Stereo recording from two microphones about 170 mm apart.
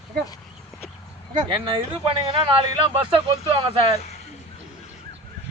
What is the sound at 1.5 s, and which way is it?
Speech, 30° right (ahead or behind).